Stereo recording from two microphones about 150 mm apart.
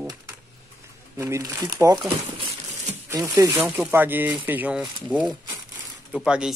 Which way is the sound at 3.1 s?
25° right (ahead or behind).